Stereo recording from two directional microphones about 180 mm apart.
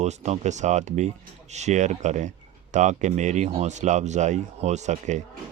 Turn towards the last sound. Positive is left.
turn(degrees=-40)  # may be behind; listen again after turning